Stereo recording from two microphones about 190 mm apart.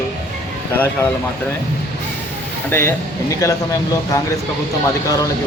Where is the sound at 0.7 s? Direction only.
10° left (ahead or behind).